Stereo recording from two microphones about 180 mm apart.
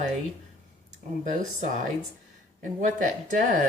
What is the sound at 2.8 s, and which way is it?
Speech, 45° right (ahead or behind).